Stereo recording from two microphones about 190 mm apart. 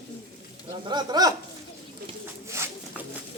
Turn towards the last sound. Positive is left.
turn(degrees=-15)  # may be behind; listen again after turning